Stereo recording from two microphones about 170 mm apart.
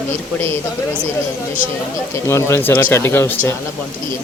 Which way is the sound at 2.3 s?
15° left (ahead or behind).